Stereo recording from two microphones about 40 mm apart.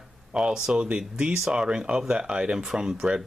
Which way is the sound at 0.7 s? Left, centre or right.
Right.